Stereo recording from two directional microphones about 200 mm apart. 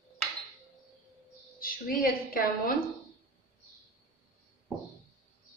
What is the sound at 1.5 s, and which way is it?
A woman's voice, 45° left (ahead or behind).